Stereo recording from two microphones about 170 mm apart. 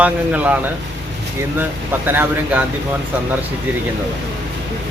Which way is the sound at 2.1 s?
10° right (ahead or behind).